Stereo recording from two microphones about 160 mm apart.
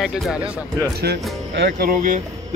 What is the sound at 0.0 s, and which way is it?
Speech, centre (ahead or behind).